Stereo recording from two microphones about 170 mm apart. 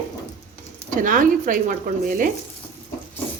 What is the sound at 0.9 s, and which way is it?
Speech, 50° right (ahead or behind).